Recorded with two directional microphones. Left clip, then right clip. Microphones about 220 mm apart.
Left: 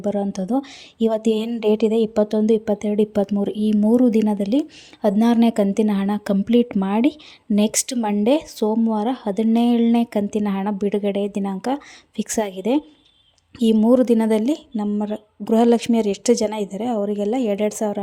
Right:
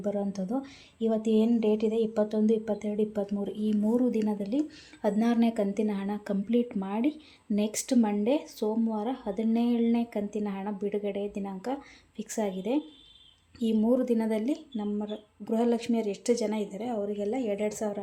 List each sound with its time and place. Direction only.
0.0 s speech: 40° left (ahead or behind)